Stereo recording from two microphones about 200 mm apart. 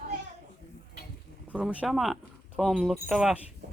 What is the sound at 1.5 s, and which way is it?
Speech, 5° right (ahead or behind).